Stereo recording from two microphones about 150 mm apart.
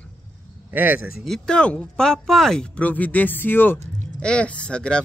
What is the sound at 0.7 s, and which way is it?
Speech, 10° right (ahead or behind).